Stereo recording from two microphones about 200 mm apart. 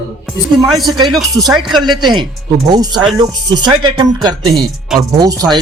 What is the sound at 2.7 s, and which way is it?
Speech, 20° right (ahead or behind).